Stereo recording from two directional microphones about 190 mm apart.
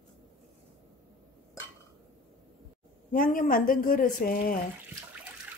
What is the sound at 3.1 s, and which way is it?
Speech, 45° left (ahead or behind).